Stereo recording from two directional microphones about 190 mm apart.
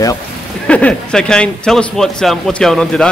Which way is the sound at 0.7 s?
5° left (ahead or behind).